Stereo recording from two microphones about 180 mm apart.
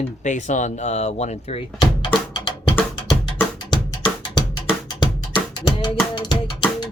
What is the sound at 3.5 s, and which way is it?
Music, 25° left (ahead or behind).